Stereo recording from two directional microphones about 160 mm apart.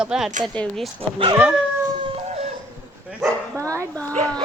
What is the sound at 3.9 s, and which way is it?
Speech, 10° left (ahead or behind).